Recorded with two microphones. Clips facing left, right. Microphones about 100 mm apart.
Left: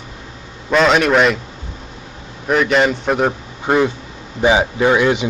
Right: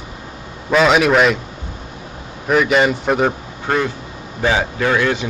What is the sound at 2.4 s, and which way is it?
Speech, centre (ahead or behind).